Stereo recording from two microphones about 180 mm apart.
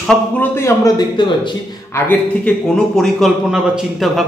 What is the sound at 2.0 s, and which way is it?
A man's voice, 5° left (ahead or behind).